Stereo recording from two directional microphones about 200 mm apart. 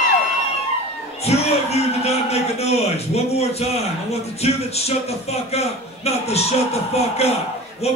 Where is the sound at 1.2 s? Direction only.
30° left (ahead or behind).